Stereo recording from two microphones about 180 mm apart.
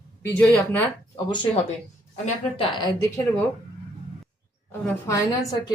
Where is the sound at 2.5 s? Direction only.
25° left (ahead or behind).